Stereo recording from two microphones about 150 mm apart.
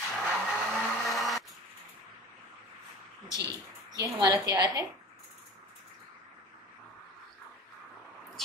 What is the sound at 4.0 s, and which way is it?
Speech, 25° right (ahead or behind).